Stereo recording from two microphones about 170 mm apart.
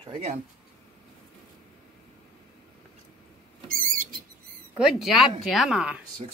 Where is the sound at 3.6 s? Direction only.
55° right (ahead or behind).